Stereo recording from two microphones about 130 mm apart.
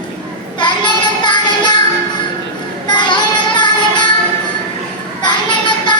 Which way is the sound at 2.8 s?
35° left (ahead or behind).